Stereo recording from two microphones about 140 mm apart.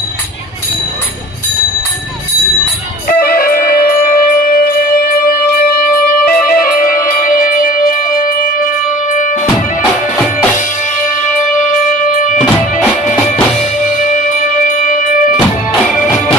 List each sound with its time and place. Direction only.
3.2 s music: 90° left
12.0 s music: 70° left (ahead or behind)
14.8 s music: 70° left (ahead or behind)